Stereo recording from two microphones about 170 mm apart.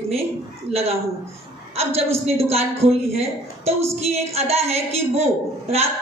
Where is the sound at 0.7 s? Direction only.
35° right (ahead or behind).